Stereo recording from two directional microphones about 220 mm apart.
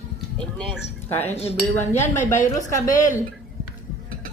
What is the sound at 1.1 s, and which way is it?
Speech, 10° left (ahead or behind).